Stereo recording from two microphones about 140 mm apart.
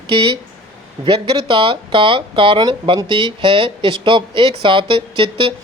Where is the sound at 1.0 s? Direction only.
40° right (ahead or behind).